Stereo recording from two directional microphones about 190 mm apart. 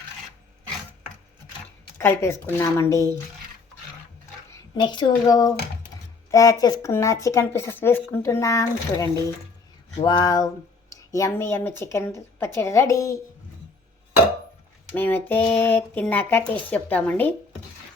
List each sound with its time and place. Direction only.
2.0 s speech: 10° left (ahead or behind)
4.5 s speech: 25° left (ahead or behind)
14.9 s speech: 10° left (ahead or behind)